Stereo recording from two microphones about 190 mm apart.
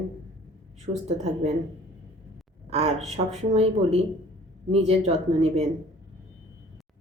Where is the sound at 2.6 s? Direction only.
30° right (ahead or behind).